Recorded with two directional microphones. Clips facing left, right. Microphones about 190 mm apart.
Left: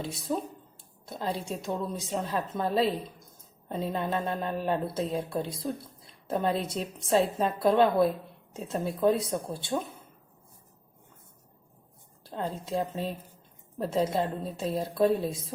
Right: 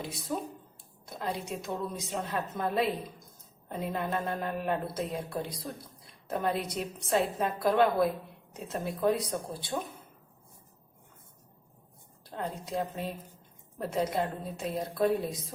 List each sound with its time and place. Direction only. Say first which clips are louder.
1.1 s a woman's voice: left 2 dB; 30° left (ahead or behind)
12.2 s a woman's voice: left 3 dB; 25° left (ahead or behind)